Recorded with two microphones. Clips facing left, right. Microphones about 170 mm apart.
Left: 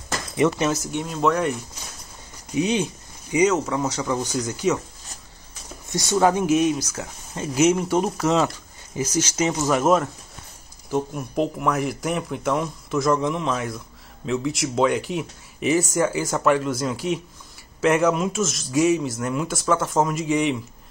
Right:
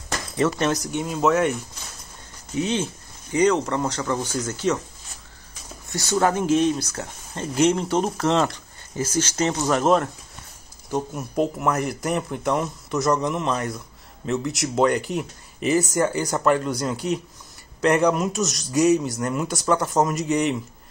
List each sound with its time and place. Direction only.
0.4 s speech: 10° left (ahead or behind)
2.5 s speech: 15° left (ahead or behind)
5.9 s speech: 20° left (ahead or behind)
11.1 s speech: centre (ahead or behind)